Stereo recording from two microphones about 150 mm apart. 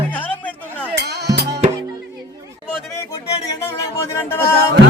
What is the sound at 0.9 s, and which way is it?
Music, 90° right.